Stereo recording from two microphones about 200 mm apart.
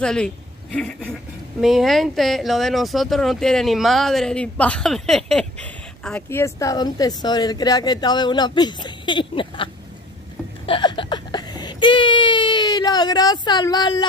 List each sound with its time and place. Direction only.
0.0 s a man's voice: 5° left (ahead or behind); by 9.7 s 25° left (ahead or behind)
10.7 s whimper: 25° left (ahead or behind)